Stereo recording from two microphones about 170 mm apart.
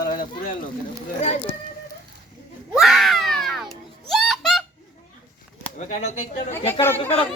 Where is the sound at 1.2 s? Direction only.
40° left (ahead or behind).